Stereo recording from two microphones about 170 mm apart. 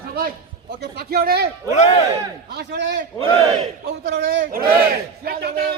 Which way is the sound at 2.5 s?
80° right.